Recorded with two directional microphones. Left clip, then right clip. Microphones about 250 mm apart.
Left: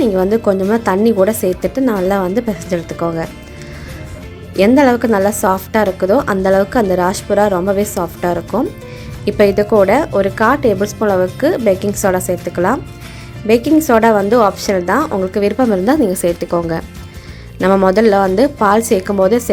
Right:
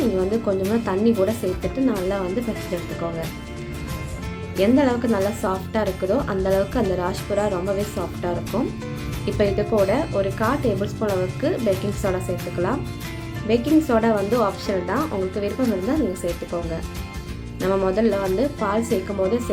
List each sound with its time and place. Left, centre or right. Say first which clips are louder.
0.2 s a woman's voice: left 9 dB; left
4.5 s a woman's voice: left 9 dB; left
17.6 s a woman's voice: left 10 dB; left